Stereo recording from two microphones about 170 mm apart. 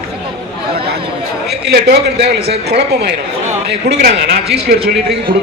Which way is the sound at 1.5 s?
75° right (ahead or behind).